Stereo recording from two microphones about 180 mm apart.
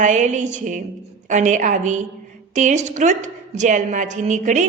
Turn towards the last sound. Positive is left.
turn(degrees=-45)  # may be behind; listen again after turning